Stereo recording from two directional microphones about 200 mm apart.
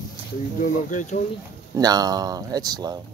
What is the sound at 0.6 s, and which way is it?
Speech, 40° left (ahead or behind).